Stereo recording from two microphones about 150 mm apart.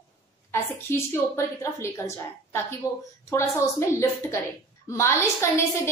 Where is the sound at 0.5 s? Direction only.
15° left (ahead or behind).